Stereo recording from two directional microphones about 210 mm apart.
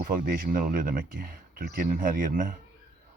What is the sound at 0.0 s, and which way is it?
Speech, 40° right (ahead or behind).